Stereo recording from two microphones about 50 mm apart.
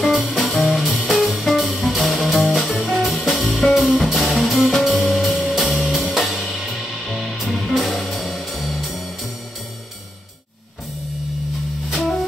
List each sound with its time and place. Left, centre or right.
0.0 s music: centre
11.9 s music: centre